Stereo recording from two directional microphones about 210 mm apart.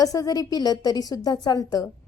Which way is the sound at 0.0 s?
15° left (ahead or behind).